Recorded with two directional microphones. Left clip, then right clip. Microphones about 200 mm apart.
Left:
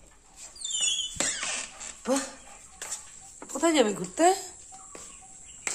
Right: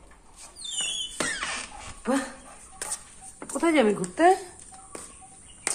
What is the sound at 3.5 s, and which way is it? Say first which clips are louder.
Speech: right 2 dB; 20° left (ahead or behind).